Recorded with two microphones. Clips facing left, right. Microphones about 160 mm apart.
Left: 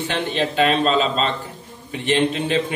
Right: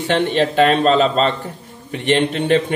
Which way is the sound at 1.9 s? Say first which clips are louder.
Right 2 dB; 60° right (ahead or behind).